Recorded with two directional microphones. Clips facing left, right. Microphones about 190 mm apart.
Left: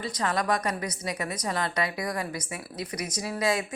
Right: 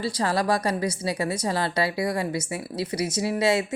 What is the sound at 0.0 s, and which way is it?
A woman's voice, 30° right (ahead or behind).